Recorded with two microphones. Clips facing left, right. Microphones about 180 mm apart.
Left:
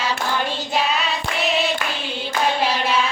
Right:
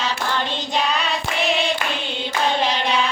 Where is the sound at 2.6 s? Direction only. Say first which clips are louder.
Even; 5° left (ahead or behind).